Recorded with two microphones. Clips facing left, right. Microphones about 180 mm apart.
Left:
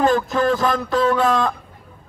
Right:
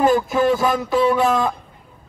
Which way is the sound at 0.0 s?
10° right (ahead or behind).